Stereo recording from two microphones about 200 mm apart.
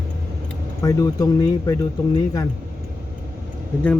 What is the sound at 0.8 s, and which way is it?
Speech, 15° left (ahead or behind).